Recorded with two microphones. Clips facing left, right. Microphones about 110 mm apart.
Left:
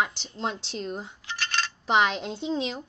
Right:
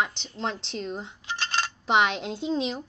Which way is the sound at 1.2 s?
25° right (ahead or behind).